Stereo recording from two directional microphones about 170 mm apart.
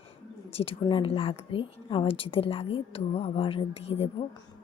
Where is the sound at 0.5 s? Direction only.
35° left (ahead or behind).